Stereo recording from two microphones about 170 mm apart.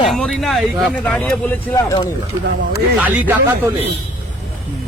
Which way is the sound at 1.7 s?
20° left (ahead or behind).